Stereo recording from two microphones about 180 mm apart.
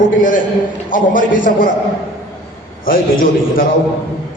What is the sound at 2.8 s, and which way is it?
Speech, 50° left (ahead or behind).